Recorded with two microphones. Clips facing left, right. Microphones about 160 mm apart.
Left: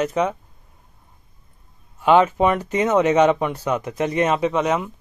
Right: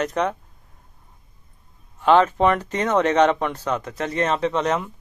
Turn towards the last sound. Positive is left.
turn(degrees=5)  # may be behind; listen again after turning